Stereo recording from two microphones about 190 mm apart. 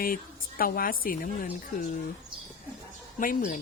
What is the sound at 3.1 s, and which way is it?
Speech, 45° left (ahead or behind).